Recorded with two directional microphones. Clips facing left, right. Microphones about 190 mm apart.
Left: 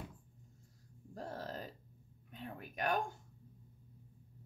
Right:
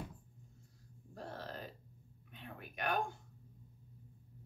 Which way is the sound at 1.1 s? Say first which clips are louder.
Left 2 dB; 45° left (ahead or behind).